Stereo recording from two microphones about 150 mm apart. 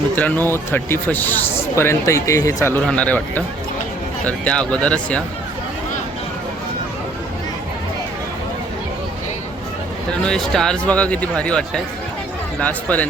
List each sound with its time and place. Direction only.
0.2 s speech: 10° left (ahead or behind)
2.7 s speech: 10° left (ahead or behind)
10.1 s speech: 5° left (ahead or behind)